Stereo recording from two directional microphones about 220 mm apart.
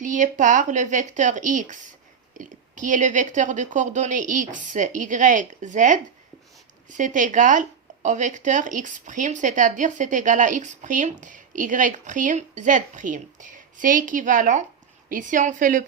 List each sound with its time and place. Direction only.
0.0 s speech: 35° right (ahead or behind)